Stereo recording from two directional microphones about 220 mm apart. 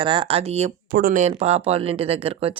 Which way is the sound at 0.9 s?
45° right (ahead or behind).